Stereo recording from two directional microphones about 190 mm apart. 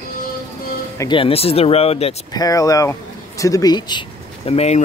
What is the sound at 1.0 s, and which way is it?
Speech, 25° left (ahead or behind).